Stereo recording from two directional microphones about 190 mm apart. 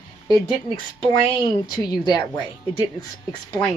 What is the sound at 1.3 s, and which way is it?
Speech, 20° left (ahead or behind).